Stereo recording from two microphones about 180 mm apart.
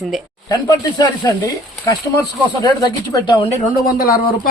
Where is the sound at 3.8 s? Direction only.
55° left (ahead or behind).